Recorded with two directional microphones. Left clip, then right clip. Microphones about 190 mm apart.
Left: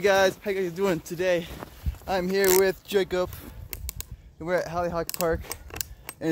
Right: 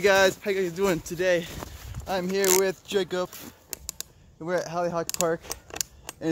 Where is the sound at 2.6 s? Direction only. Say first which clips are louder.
Left 2 dB; 40° left (ahead or behind).